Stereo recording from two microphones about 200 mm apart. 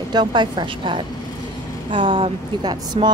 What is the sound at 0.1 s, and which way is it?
Speech, 20° right (ahead or behind).